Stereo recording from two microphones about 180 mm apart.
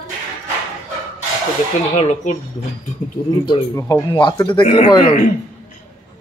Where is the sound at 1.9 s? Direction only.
40° left (ahead or behind).